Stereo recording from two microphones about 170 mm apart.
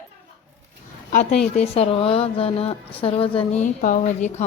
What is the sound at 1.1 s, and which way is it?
A woman's voice, 40° left (ahead or behind).